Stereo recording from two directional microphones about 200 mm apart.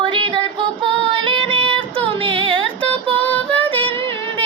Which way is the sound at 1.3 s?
25° right (ahead or behind).